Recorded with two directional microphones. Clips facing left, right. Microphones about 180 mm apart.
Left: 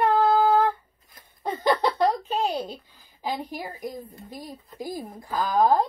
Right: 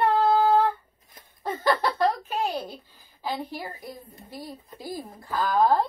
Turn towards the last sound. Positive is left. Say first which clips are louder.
# left 1 dB
turn(degrees=15)  # may be behind; listen again after turning